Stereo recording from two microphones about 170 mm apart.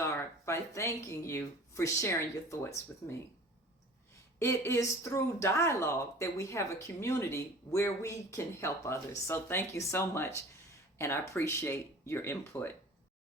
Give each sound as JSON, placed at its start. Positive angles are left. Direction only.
{"t": 0.0, "sound": "speech", "side_deg": 15}
{"t": 4.4, "sound": "speech", "side_deg": 15}